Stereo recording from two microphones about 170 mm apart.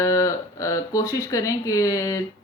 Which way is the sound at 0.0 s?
20° left (ahead or behind).